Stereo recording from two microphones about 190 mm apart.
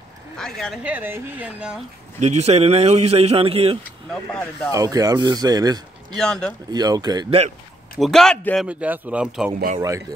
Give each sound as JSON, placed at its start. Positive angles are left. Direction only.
{"t": 0.4, "sound": "speech", "side_deg": 0}
{"t": 2.1, "sound": "speech", "side_deg": -35}
{"t": 4.1, "sound": "speech", "side_deg": 5}
{"t": 4.7, "sound": "speech", "side_deg": -20}
{"t": 6.1, "sound": "a man's voice", "side_deg": 5}
{"t": 6.7, "sound": "speech", "side_deg": -20}
{"t": 8.0, "sound": "a man's voice", "side_deg": 0}
{"t": 8.6, "sound": "speech", "side_deg": -10}
{"t": 9.8, "sound": "speech", "side_deg": -15}